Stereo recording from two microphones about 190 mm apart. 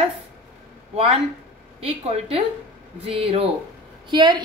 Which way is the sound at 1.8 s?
35° right (ahead or behind).